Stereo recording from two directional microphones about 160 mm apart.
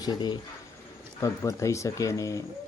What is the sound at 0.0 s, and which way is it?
Speech, 25° left (ahead or behind).